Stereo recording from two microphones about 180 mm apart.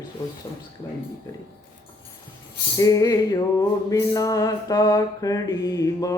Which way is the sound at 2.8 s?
20° left (ahead or behind).